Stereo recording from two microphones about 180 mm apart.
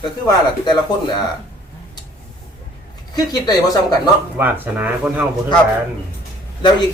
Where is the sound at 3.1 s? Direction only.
20° left (ahead or behind).